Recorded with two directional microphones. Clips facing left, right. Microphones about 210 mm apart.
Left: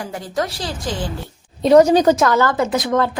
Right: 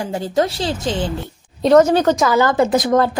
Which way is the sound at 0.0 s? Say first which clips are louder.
Right 5 dB; 25° right (ahead or behind).